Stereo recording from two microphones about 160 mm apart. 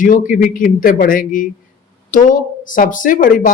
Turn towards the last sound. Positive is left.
turn(degrees=60)  # may be behind; listen again after turning